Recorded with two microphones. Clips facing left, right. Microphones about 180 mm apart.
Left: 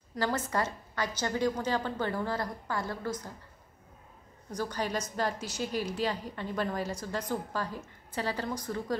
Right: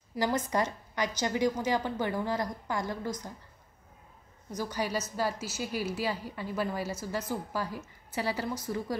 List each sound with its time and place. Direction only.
0.1 s a woman's voice: 10° right (ahead or behind)
4.6 s a woman's voice: 10° right (ahead or behind)